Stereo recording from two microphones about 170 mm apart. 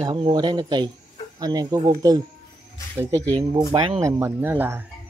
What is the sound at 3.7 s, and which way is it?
Speech, 30° right (ahead or behind).